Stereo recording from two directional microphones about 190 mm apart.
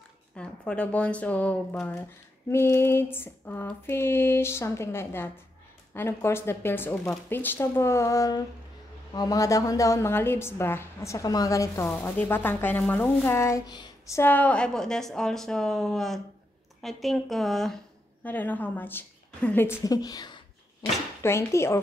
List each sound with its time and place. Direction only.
0.4 s a woman's voice: 5° left (ahead or behind); by 20.9 s 25° left (ahead or behind)
21.2 s a woman's voice: 15° left (ahead or behind)